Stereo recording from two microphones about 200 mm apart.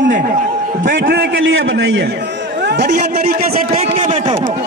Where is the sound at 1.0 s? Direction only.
50° right (ahead or behind).